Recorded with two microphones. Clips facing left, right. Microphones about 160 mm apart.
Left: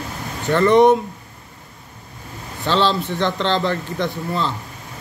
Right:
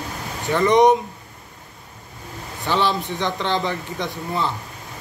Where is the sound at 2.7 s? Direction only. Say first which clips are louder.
Left 3 dB; 15° right (ahead or behind).